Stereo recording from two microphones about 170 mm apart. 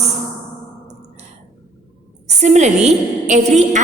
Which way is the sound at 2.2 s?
40° right (ahead or behind).